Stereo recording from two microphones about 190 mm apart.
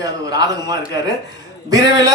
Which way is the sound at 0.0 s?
20° right (ahead or behind).